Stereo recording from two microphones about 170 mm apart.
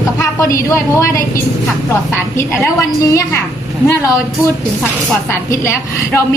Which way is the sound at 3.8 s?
15° left (ahead or behind).